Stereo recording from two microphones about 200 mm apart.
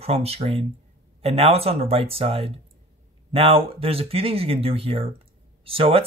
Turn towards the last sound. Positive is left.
turn(degrees=-30)  # may be behind; listen again after turning